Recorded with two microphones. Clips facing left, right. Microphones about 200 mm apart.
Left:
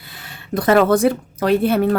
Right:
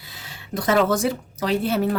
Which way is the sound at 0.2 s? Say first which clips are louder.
Left 6 dB; 60° left (ahead or behind).